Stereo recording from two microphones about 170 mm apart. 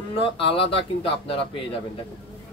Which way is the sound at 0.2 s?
30° left (ahead or behind).